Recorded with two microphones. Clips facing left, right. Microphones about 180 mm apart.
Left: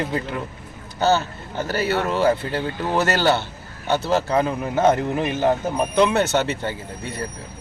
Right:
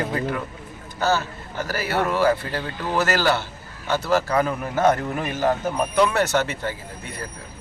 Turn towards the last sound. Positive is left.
turn(degrees=25)  # may be behind; listen again after turning